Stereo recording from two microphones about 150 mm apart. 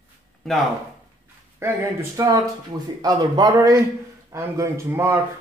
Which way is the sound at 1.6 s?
15° right (ahead or behind).